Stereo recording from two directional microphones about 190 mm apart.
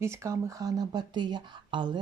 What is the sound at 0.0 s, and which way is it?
Speech, 15° right (ahead or behind).